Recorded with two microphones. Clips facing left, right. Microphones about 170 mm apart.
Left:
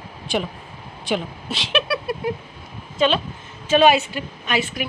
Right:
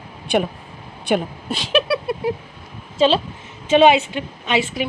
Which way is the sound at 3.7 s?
20° right (ahead or behind).